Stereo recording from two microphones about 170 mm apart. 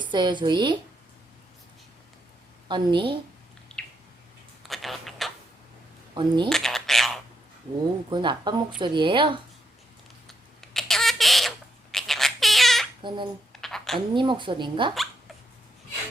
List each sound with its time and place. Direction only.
0.0 s speech: 25° right (ahead or behind)
2.6 s speech: 30° right (ahead or behind)
3.7 s a sound: 5° left (ahead or behind)
6.1 s speech: 30° right (ahead or behind)
6.5 s typing: centre (ahead or behind)
8.1 s speech: 25° right (ahead or behind)
10.2 s a sound: centre (ahead or behind)
13.0 s speech: 30° right (ahead or behind)
13.5 s a sound: centre (ahead or behind)
14.1 s speech: 30° right (ahead or behind)